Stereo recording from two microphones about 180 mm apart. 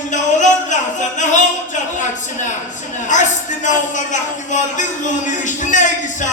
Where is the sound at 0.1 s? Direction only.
40° left (ahead or behind).